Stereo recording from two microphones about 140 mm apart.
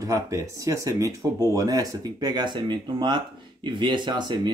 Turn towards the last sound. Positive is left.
turn(degrees=-30)  # may be behind; listen again after turning